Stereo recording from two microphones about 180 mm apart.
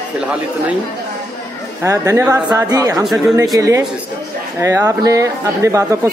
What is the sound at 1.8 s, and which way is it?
Speech, 15° right (ahead or behind).